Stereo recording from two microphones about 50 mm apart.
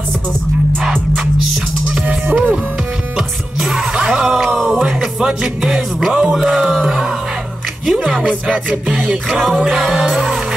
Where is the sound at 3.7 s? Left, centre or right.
Centre.